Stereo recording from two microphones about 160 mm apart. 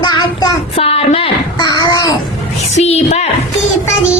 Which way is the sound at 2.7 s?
45° left (ahead or behind).